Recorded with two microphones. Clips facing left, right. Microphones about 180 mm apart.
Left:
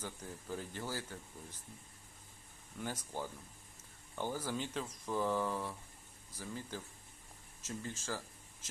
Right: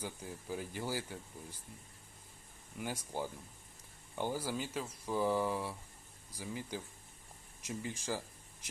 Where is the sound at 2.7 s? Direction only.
10° right (ahead or behind).